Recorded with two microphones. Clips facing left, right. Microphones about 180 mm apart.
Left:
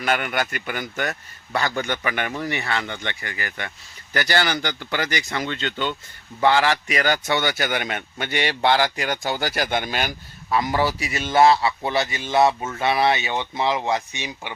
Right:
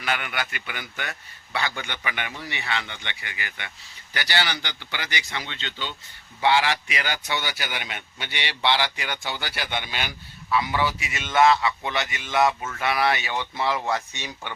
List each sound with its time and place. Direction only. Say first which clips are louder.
0.0 s speech: left 6 dB; 45° left (ahead or behind); by 14.5 s 10° left (ahead or behind)